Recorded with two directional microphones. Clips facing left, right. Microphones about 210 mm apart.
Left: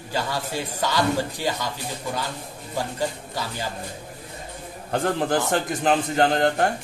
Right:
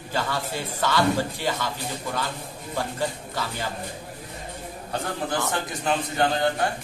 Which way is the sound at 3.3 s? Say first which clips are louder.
Even; 15° left (ahead or behind).